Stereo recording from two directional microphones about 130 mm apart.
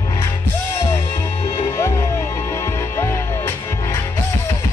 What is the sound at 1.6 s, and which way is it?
Music, 20° left (ahead or behind).